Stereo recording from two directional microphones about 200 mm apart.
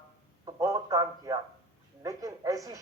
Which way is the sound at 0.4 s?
15° right (ahead or behind).